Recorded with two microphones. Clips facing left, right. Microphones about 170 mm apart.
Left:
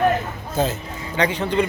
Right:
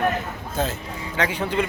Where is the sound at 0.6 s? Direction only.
Centre (ahead or behind).